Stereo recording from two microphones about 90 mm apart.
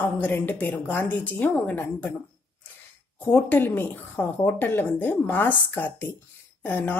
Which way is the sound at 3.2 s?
20° left (ahead or behind).